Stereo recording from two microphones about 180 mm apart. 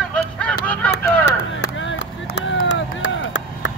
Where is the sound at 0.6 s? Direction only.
10° left (ahead or behind).